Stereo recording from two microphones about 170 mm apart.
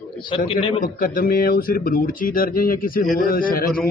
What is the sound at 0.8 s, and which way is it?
Speech, 55° left (ahead or behind).